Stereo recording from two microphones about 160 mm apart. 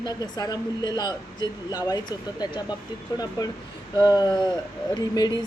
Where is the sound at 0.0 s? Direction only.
25° left (ahead or behind).